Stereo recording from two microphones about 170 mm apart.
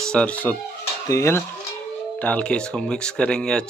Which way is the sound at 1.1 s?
15° left (ahead or behind).